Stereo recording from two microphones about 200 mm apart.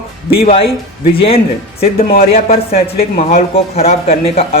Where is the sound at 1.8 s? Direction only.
50° left (ahead or behind).